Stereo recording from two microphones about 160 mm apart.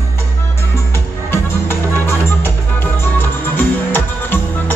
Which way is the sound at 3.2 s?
10° left (ahead or behind).